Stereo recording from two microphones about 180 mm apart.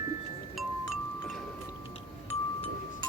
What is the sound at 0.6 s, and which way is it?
Chime, centre (ahead or behind).